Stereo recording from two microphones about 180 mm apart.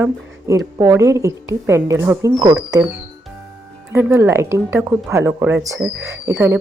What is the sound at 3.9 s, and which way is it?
A woman's voice, 15° right (ahead or behind).